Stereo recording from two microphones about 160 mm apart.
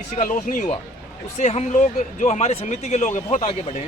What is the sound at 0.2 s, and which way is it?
Speech, 55° left (ahead or behind).